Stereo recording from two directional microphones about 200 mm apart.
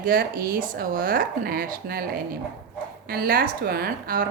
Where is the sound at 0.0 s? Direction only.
45° right (ahead or behind).